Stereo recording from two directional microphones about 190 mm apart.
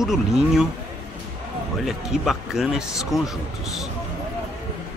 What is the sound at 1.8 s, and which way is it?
Speech, centre (ahead or behind).